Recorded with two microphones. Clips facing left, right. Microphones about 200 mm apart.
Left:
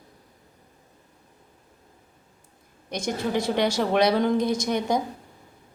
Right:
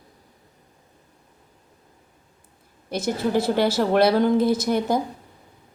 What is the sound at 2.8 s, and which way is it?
A woman's voice, 5° right (ahead or behind).